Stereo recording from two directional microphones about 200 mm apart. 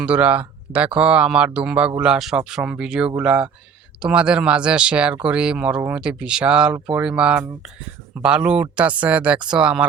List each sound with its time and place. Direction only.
0.0 s speech: 5° right (ahead or behind)